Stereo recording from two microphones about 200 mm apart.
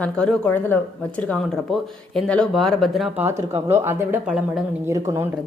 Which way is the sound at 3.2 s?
15° right (ahead or behind).